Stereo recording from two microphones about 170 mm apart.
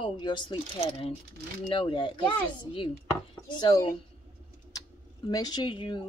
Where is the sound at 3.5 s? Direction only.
25° left (ahead or behind).